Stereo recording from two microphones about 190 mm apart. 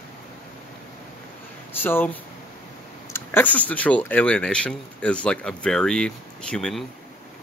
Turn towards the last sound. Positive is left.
turn(degrees=5)  # may be behind; listen again after turning